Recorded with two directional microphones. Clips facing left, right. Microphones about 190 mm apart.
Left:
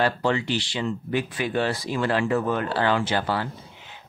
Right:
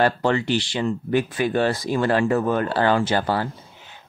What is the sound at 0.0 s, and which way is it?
Speech, 50° right (ahead or behind).